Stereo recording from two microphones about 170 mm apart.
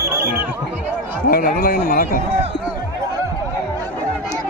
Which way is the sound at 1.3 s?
55° left (ahead or behind).